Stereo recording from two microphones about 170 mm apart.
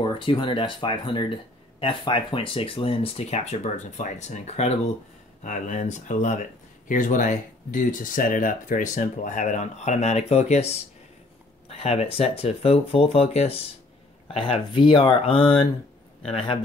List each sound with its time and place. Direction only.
0.0 s speech: 30° left (ahead or behind)